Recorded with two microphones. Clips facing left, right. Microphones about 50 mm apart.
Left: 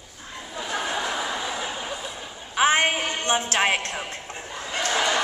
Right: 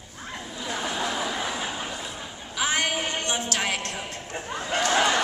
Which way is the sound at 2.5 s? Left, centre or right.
Left.